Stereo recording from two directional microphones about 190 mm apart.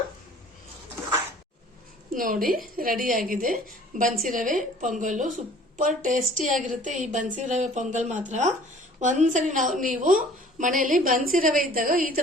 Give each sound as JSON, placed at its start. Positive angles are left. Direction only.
{"t": 2.1, "sound": "a woman's voice", "side_deg": -45}